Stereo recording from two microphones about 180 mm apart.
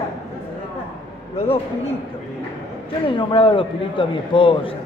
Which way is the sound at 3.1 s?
30° left (ahead or behind).